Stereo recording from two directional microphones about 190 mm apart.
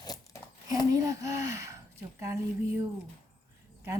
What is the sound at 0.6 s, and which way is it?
Speech, 15° right (ahead or behind).